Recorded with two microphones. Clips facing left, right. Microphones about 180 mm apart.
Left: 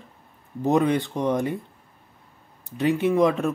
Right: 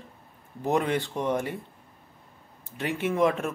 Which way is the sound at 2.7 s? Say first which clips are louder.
Left 7 dB; 15° left (ahead or behind).